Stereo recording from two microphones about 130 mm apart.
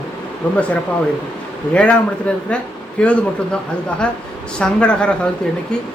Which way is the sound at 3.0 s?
10° left (ahead or behind).